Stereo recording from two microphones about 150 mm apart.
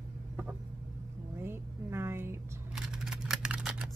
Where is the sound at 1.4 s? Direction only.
15° right (ahead or behind).